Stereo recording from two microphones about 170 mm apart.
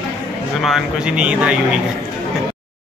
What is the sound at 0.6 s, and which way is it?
Speech, centre (ahead or behind).